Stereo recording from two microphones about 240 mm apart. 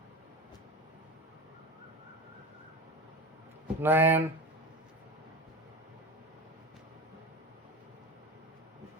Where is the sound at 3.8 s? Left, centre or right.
Centre.